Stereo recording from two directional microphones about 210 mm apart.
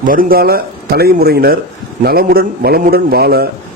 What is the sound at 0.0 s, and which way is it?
A man's voice, 40° right (ahead or behind).